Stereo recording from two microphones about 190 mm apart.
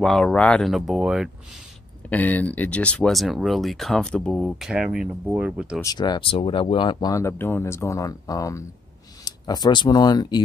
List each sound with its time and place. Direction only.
0.0 s speech: 5° left (ahead or behind)
2.0 s speech: 10° left (ahead or behind)
5.8 s speech: 20° left (ahead or behind)